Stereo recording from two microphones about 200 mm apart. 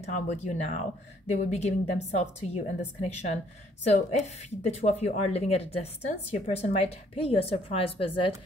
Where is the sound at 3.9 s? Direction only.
35° left (ahead or behind).